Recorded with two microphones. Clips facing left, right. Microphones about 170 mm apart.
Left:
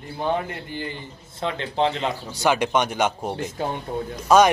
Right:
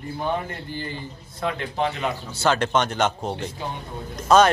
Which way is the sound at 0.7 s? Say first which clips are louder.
Even; 20° left (ahead or behind).